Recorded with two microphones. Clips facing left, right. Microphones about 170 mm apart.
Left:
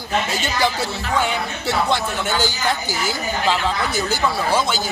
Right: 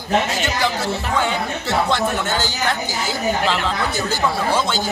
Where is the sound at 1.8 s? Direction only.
10° left (ahead or behind).